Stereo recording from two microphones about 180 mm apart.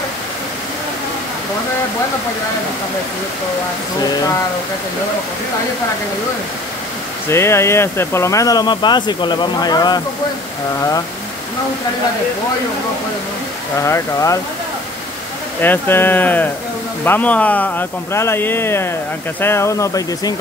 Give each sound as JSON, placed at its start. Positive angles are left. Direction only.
{"t": 7.2, "sound": "speech", "side_deg": 15}
{"t": 13.7, "sound": "speech", "side_deg": 15}
{"t": 15.6, "sound": "speech", "side_deg": 10}